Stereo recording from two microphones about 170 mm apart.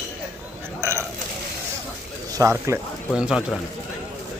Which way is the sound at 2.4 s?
15° right (ahead or behind).